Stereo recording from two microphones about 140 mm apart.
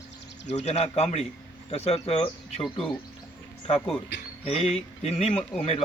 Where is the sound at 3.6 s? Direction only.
40° left (ahead or behind).